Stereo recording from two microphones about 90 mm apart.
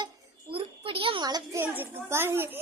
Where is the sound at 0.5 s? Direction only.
90° right.